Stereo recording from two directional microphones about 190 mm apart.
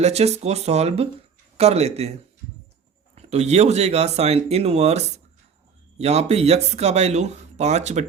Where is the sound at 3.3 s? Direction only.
35° right (ahead or behind).